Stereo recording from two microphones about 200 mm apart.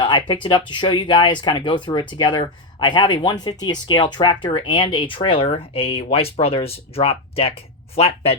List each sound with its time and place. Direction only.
0.0 s speech: 20° left (ahead or behind)